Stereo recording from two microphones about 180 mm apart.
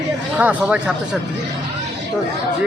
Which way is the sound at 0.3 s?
5° right (ahead or behind).